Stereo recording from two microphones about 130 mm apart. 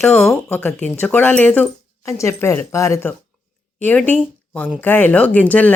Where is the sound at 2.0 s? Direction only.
20° left (ahead or behind).